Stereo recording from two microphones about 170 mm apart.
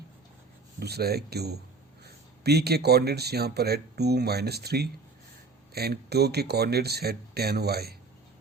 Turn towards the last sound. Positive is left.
turn(degrees=-70)  # may be behind; listen again after turning